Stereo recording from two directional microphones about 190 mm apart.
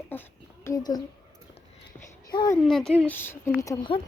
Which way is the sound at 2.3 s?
20° left (ahead or behind).